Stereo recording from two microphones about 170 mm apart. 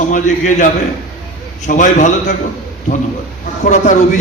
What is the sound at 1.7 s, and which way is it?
Speech, 50° left (ahead or behind).